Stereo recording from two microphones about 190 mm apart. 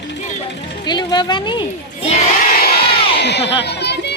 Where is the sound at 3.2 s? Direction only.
60° left (ahead or behind).